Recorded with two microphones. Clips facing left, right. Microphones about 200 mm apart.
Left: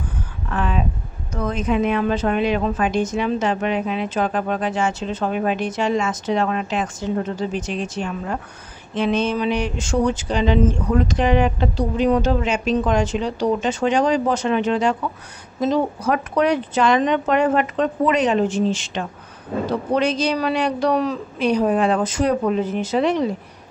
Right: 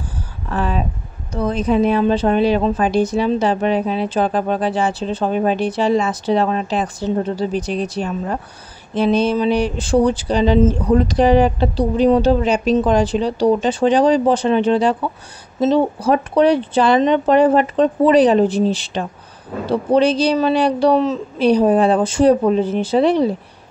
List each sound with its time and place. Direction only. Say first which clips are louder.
0.5 s speech: right 2 dB; 35° right (ahead or behind)